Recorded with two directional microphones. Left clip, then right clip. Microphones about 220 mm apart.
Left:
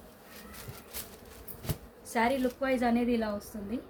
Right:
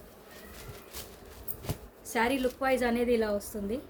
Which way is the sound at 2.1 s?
45° right (ahead or behind).